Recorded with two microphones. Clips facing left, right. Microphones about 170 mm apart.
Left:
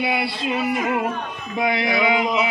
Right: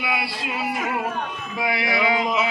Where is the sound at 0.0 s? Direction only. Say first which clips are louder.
Left 4 dB; 25° left (ahead or behind).